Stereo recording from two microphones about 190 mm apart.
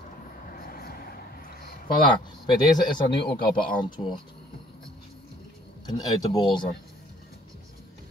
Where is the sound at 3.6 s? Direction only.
25° left (ahead or behind).